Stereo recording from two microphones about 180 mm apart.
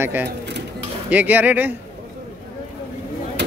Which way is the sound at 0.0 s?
10° right (ahead or behind).